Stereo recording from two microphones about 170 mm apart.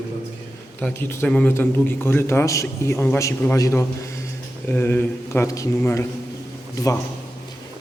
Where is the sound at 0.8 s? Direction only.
10° left (ahead or behind).